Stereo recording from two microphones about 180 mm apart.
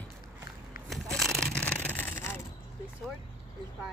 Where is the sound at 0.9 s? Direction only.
Centre (ahead or behind).